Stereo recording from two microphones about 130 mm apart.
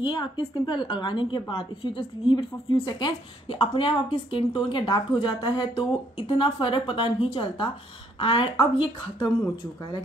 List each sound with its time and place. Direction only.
0.0 s a woman's voice: 35° left (ahead or behind)